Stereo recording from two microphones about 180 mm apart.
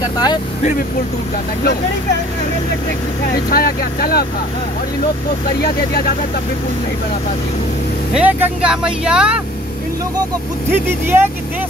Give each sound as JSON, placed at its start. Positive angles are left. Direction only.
{"t": 3.4, "sound": "speech", "side_deg": 55}
{"t": 5.6, "sound": "speech", "side_deg": 60}
{"t": 8.1, "sound": "speech", "side_deg": -10}
{"t": 10.7, "sound": "speech", "side_deg": -10}